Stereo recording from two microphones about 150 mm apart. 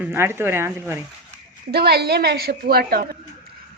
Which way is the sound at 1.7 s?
90° right.